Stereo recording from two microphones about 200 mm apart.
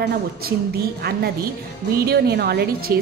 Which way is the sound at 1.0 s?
50° right (ahead or behind).